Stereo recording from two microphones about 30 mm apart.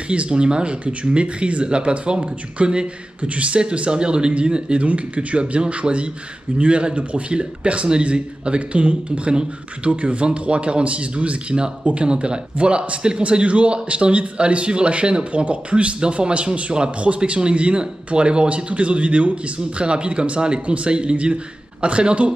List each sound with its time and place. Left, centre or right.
0.1 s a man's voice: right
2.6 s a man's voice: right
4.8 s a man's voice: right
20.6 s speech: right
20.9 s a man's voice: right